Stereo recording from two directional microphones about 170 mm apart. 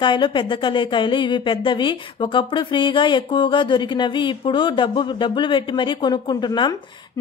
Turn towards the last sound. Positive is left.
turn(degrees=25)  # may be behind; listen again after turning